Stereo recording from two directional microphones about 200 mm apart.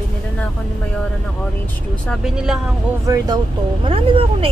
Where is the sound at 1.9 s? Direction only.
Centre (ahead or behind).